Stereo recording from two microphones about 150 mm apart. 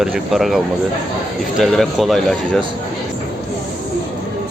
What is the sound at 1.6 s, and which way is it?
Speech, centre (ahead or behind).